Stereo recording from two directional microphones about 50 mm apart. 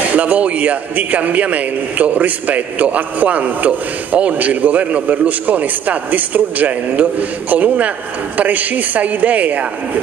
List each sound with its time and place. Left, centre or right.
0.1 s a man's voice: right